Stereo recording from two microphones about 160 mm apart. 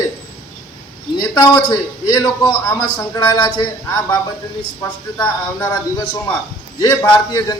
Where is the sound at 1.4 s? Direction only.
25° left (ahead or behind).